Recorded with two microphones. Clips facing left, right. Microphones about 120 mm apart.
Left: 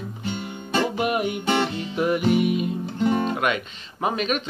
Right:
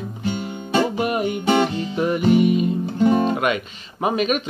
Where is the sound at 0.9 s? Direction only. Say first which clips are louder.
Right 2 dB; 5° left (ahead or behind).